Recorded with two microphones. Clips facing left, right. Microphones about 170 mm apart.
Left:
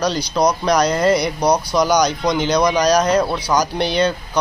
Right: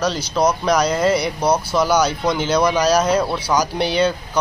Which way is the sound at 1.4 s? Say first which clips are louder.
Even; 15° left (ahead or behind).